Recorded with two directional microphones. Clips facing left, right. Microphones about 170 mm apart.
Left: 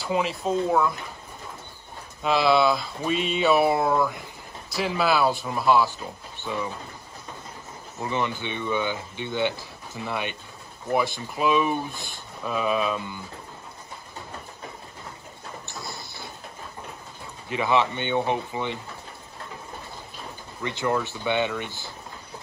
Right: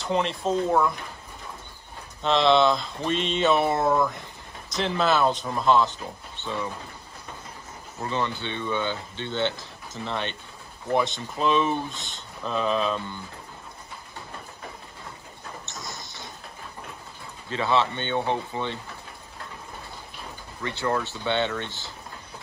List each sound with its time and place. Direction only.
0.0 s speech: 5° left (ahead or behind)
2.2 s speech: 5° left (ahead or behind)
8.0 s speech: 15° left (ahead or behind)
15.7 s a sound: 40° right (ahead or behind)
17.5 s speech: 15° left (ahead or behind)
20.6 s speech: 15° left (ahead or behind)